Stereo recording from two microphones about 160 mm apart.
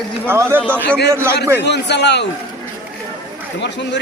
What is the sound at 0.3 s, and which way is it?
Speech, 15° right (ahead or behind).